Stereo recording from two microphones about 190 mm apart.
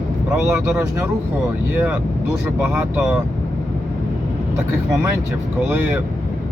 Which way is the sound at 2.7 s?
10° right (ahead or behind).